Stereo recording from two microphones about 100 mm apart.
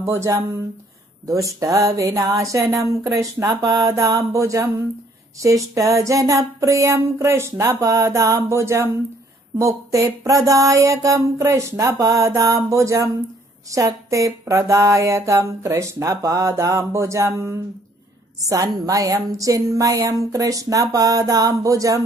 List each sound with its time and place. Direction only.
0.0 s speech: 30° right (ahead or behind)